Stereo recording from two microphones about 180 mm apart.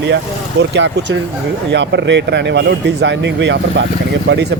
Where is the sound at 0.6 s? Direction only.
70° right (ahead or behind).